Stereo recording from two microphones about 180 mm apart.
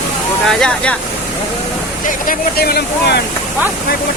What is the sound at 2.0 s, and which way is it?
Speech, 55° left (ahead or behind).